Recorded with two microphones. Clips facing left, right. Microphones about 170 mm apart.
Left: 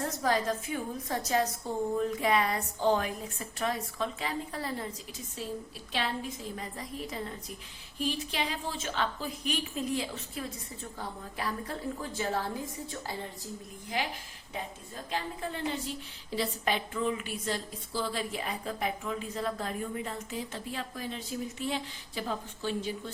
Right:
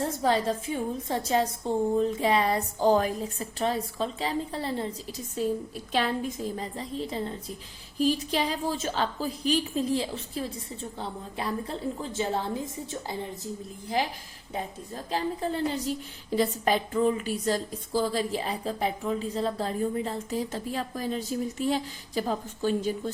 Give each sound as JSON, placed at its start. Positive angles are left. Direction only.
{"t": 0.0, "sound": "a woman's voice", "side_deg": -25}
{"t": 6.6, "sound": "a woman's voice", "side_deg": -30}
{"t": 13.8, "sound": "a woman's voice", "side_deg": -35}
{"t": 15.1, "sound": "a woman's voice", "side_deg": -35}